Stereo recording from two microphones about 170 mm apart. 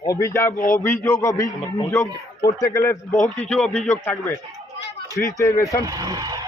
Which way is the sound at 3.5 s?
5° left (ahead or behind).